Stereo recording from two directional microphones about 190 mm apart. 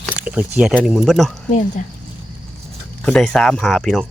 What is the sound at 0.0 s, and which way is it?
Speech, 5° right (ahead or behind).